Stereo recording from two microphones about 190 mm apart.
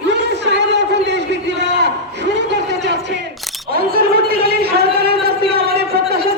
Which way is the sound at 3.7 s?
55° right (ahead or behind).